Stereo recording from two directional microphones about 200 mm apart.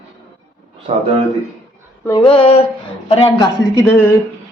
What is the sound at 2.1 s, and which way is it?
Speech, 25° left (ahead or behind).